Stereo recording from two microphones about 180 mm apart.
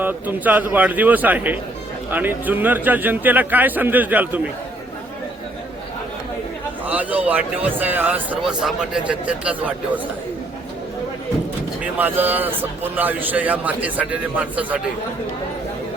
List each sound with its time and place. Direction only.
0.0 s a man's voice: 10° right (ahead or behind)
6.8 s a man's voice: 10° right (ahead or behind)
11.8 s a man's voice: 10° right (ahead or behind)